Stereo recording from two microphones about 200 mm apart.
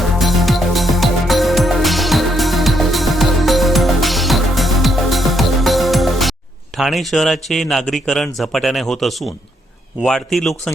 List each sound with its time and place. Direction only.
0.0 s music: centre (ahead or behind)
6.7 s a man's voice: centre (ahead or behind)